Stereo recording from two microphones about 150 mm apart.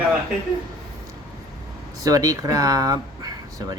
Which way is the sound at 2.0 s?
25° right (ahead or behind).